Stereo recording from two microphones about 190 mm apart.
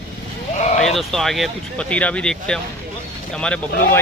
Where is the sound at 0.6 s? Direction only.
35° left (ahead or behind).